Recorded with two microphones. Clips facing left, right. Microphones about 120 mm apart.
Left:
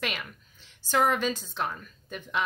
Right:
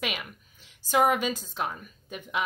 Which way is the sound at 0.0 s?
5° right (ahead or behind).